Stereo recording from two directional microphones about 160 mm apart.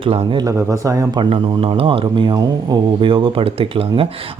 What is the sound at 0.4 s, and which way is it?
Speech, 20° right (ahead or behind).